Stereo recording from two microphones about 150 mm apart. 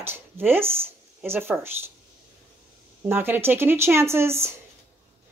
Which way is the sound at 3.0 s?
15° right (ahead or behind).